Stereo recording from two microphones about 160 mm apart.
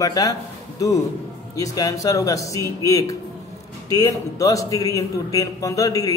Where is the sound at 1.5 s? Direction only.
20° left (ahead or behind).